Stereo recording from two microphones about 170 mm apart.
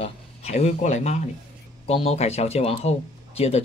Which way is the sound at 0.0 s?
40° left (ahead or behind).